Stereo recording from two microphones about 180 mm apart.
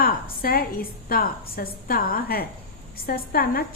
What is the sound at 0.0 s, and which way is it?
A woman's voice, 55° left (ahead or behind).